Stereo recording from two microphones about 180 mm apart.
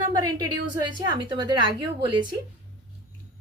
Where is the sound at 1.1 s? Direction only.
25° right (ahead or behind).